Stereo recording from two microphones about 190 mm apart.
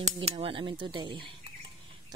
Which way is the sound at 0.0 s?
30° right (ahead or behind).